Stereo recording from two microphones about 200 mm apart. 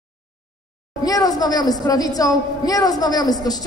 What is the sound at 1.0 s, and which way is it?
A woman's voice, 20° left (ahead or behind).